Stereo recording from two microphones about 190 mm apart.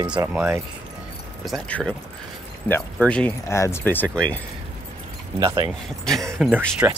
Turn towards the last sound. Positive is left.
turn(degrees=-10)  # may be behind; listen again after turning